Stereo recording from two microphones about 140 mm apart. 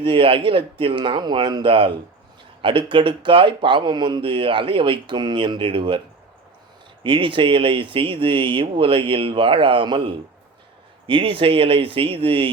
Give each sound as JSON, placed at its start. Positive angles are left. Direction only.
{"t": 0.0, "sound": "speech", "side_deg": -40}
{"t": 7.0, "sound": "speech", "side_deg": -40}